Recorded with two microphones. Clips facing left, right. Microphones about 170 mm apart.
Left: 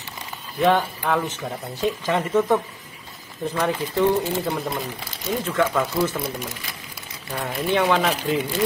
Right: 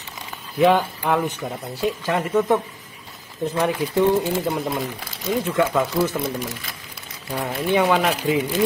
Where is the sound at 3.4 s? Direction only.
15° right (ahead or behind).